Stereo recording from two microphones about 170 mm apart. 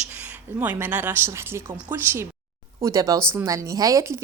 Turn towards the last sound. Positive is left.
turn(degrees=-20)  # may be behind; listen again after turning